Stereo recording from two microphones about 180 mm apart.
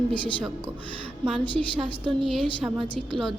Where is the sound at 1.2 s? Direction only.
Centre (ahead or behind).